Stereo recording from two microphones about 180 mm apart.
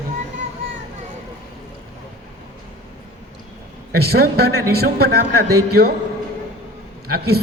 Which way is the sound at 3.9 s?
60° right (ahead or behind).